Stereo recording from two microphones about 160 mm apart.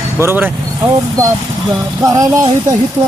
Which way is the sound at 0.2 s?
15° right (ahead or behind).